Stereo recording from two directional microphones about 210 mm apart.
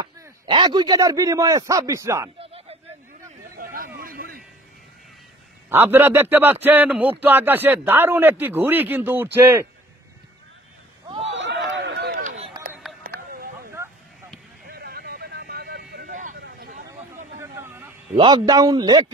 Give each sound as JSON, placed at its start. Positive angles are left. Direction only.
{"t": 0.0, "sound": "a man's voice", "side_deg": -20}
{"t": 3.5, "sound": "a sound", "side_deg": -45}
{"t": 5.7, "sound": "a man's voice", "side_deg": -10}
{"t": 11.3, "sound": "run", "side_deg": -60}
{"t": 12.2, "sound": "run", "side_deg": -35}
{"t": 14.7, "sound": "vehicle", "side_deg": -45}
{"t": 17.4, "sound": "a sound", "side_deg": -10}
{"t": 18.1, "sound": "a man's voice", "side_deg": -20}